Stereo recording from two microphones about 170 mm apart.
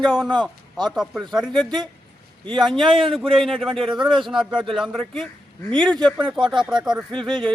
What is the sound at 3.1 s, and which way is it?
Speech, centre (ahead or behind).